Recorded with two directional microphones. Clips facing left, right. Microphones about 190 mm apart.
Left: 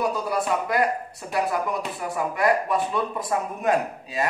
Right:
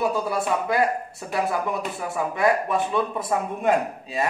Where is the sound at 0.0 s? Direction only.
25° right (ahead or behind).